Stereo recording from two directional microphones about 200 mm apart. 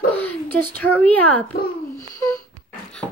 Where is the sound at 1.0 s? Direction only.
5° left (ahead or behind).